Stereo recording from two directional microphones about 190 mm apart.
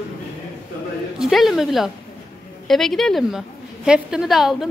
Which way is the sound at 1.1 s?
Centre (ahead or behind).